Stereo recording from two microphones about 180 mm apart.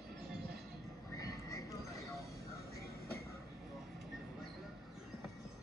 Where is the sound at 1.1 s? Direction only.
20° left (ahead or behind).